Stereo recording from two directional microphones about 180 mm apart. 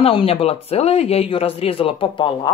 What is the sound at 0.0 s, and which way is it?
A man's voice, 30° left (ahead or behind).